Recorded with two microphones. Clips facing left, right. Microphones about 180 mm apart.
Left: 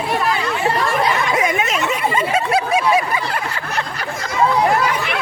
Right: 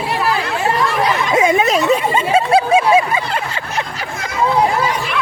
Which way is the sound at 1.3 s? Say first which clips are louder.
Right 5 dB; 30° right (ahead or behind).